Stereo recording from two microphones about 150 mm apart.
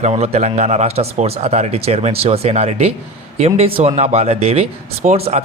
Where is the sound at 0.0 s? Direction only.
45° right (ahead or behind).